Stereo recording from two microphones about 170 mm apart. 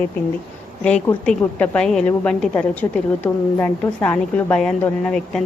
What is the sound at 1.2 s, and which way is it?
A woman's voice, 5° left (ahead or behind).